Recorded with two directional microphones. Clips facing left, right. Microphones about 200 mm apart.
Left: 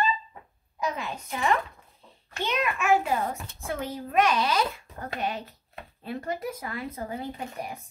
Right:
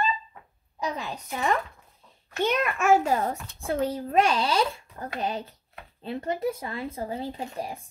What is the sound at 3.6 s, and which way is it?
A child's voice, 30° right (ahead or behind).